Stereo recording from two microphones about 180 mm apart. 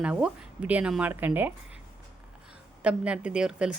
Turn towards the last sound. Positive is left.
turn(degrees=-5)  # may be behind; listen again after turning